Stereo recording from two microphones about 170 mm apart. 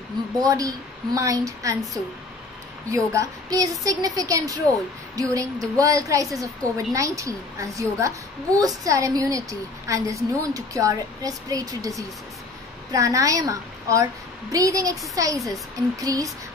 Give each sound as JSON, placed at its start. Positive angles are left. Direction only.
{"t": 0.4, "sound": "a woman's voice", "side_deg": -20}
{"t": 2.9, "sound": "a woman's voice", "side_deg": -20}